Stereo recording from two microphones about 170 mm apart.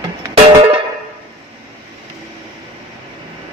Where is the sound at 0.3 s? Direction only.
35° right (ahead or behind).